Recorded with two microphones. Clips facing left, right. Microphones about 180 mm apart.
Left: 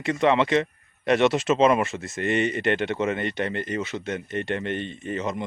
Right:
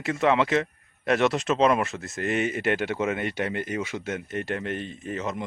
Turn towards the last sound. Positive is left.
turn(degrees=0)  # may be behind; listen again after turning